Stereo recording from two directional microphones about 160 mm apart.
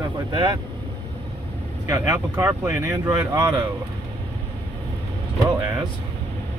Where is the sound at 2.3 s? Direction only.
15° right (ahead or behind).